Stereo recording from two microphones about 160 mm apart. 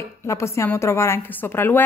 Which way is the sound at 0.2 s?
15° left (ahead or behind).